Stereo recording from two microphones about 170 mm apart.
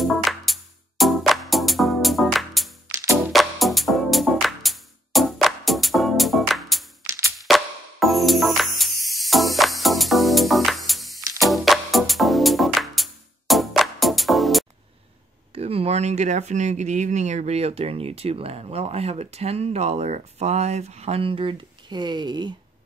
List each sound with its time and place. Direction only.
0.0 s music: centre (ahead or behind)
7.1 s music: 20° right (ahead or behind)
7.3 s music: centre (ahead or behind)
15.5 s speech: 35° right (ahead or behind)